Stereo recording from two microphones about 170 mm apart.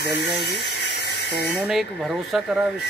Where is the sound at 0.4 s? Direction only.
70° left (ahead or behind).